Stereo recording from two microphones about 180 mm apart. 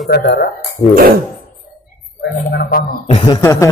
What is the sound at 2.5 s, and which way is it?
Speech, 55° left (ahead or behind).